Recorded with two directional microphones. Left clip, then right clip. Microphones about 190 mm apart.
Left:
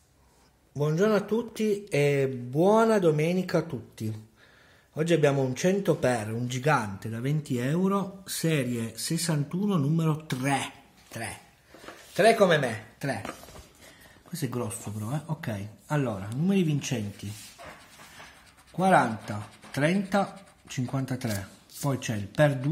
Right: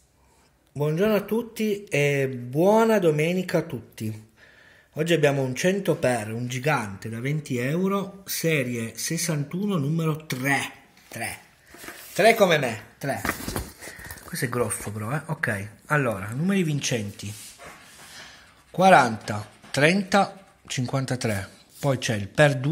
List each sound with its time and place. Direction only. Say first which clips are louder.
0.7 s speech: right 2 dB; 5° right (ahead or behind)
14.3 s speech: right 7 dB; 10° right (ahead or behind)
18.8 s speech: right 6 dB; 20° right (ahead or behind)